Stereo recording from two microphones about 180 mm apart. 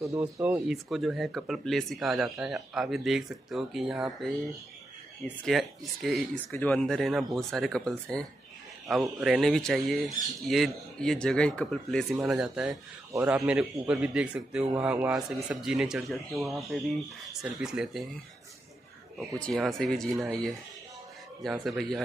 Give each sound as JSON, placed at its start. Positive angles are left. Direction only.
{"t": 0.2, "sound": "a man's voice", "side_deg": -5}
{"t": 19.4, "sound": "speech", "side_deg": 0}